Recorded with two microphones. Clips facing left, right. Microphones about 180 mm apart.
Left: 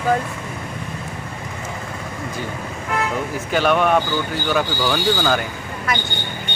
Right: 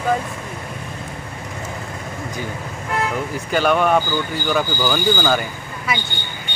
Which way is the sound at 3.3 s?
Centre (ahead or behind).